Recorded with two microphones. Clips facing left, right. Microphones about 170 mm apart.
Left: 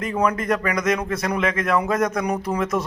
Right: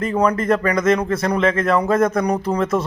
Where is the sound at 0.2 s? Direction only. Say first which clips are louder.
Right 4 dB; 5° left (ahead or behind).